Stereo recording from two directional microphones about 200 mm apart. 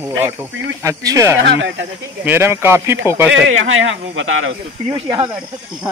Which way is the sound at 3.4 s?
80° right.